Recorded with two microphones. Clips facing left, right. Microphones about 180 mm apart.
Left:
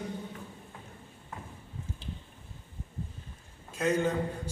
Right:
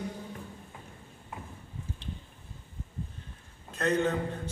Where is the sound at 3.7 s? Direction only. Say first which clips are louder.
Even; 10° left (ahead or behind).